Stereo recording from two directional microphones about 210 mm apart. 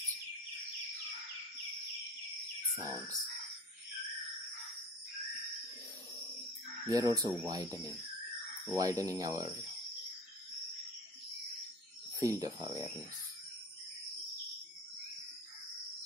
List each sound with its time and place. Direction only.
2.7 s speech: 15° right (ahead or behind)
6.9 s speech: 15° right (ahead or behind)
8.6 s speech: 15° right (ahead or behind)
12.2 s speech: 15° right (ahead or behind)